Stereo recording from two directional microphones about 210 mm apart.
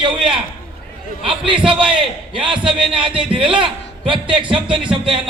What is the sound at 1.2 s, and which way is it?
A man's voice, 25° right (ahead or behind).